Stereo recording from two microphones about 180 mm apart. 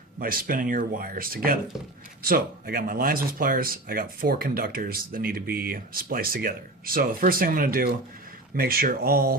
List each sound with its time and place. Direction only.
0.2 s speech: 55° right (ahead or behind)